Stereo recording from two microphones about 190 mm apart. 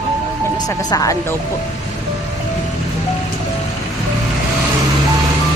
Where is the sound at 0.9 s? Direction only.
20° left (ahead or behind).